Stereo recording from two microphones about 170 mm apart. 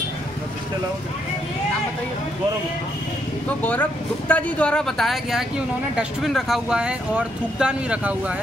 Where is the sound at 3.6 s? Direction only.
10° left (ahead or behind); by 8.3 s 5° right (ahead or behind).